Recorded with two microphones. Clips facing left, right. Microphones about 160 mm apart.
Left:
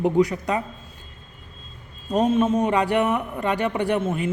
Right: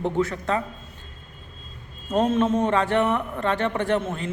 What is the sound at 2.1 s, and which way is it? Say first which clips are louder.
A man's voice: left 1 dB; 10° left (ahead or behind).